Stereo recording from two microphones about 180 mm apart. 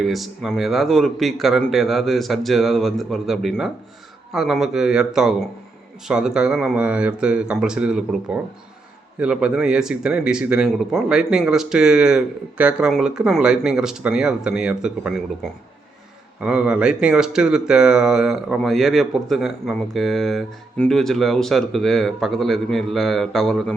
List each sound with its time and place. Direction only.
0.0 s speech: centre (ahead or behind)
16.4 s speech: 5° right (ahead or behind)